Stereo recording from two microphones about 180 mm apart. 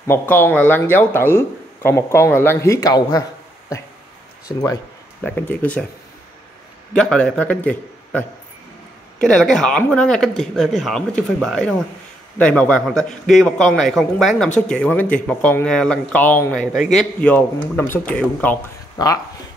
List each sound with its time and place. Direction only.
0.0 s a man's voice: 10° left (ahead or behind)
6.9 s a man's voice: 5° left (ahead or behind)
16.7 s a man's voice: 5° right (ahead or behind)
17.2 s a man's voice: 10° left (ahead or behind)
19.0 s speech: 20° left (ahead or behind)